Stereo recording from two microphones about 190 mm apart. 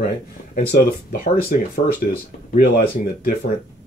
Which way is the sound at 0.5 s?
50° left (ahead or behind).